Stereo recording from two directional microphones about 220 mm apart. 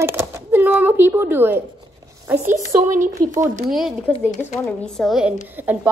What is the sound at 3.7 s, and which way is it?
A woman's voice, centre (ahead or behind).